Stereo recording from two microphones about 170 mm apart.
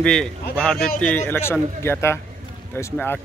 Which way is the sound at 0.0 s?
5° left (ahead or behind).